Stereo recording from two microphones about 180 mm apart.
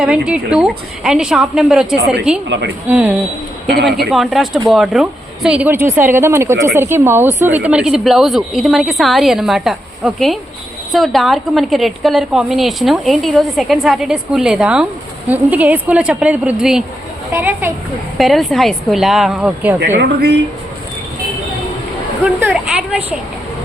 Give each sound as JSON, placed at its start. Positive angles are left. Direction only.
{"t": 0.0, "sound": "a woman's voice", "side_deg": -5}
{"t": 18.2, "sound": "a woman's voice", "side_deg": 0}
{"t": 20.0, "sound": "speech", "side_deg": -65}
{"t": 22.4, "sound": "speech", "side_deg": -10}